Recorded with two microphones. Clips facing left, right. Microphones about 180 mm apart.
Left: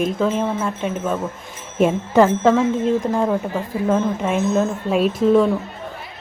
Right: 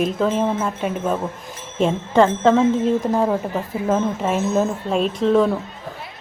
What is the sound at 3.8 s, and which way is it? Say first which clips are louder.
A woman's voice: left 1 dB; 5° right (ahead or behind).